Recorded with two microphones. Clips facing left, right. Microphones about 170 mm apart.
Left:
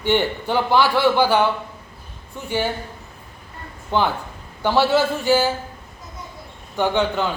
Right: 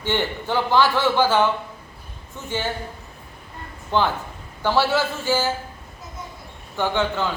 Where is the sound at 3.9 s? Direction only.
15° left (ahead or behind).